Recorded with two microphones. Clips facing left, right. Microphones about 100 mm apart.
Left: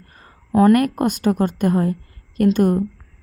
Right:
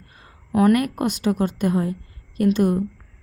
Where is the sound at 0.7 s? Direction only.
45° left (ahead or behind).